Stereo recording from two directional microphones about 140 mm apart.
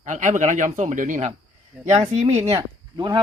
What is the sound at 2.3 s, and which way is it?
Speech, 45° right (ahead or behind).